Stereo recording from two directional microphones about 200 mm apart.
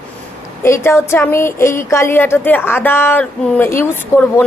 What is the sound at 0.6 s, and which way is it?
A woman's voice, 15° left (ahead or behind).